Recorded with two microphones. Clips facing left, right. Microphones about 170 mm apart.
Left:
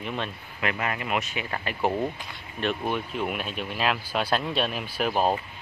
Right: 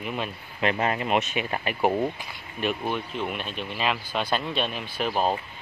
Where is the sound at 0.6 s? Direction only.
30° right (ahead or behind); by 2.7 s 5° right (ahead or behind).